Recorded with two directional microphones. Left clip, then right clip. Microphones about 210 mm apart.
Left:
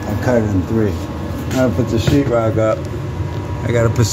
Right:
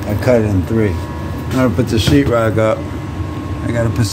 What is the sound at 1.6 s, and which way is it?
Speech, 25° right (ahead or behind).